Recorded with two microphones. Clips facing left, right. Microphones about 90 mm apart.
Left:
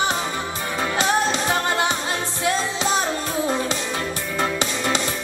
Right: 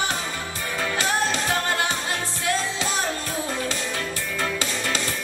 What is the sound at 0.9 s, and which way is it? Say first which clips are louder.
Music: left 4 dB; 20° left (ahead or behind).